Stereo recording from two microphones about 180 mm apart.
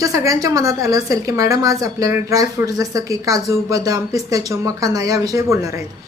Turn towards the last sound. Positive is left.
turn(degrees=-15)  # may be behind; listen again after turning